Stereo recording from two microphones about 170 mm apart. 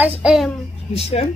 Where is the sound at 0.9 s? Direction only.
40° left (ahead or behind).